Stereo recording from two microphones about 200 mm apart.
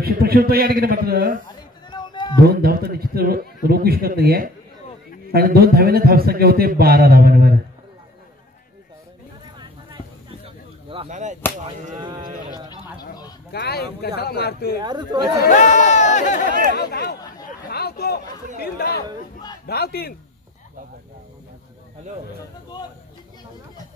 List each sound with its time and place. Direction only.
0.0 s a man's voice: 50° right (ahead or behind)
1.9 s a sound: 20° left (ahead or behind)
2.4 s a man's voice: 50° right (ahead or behind)
9.6 s a sound: 25° right (ahead or behind)
12.0 s sheep: 20° right (ahead or behind)
13.5 s speech: 50° left (ahead or behind)
14.8 s speech: 20° right (ahead or behind)
15.4 s speech: 40° left (ahead or behind)
16.7 s speech: 50° left (ahead or behind)
17.6 s a sound: 50° left (ahead or behind)
19.6 s speech: 50° left (ahead or behind)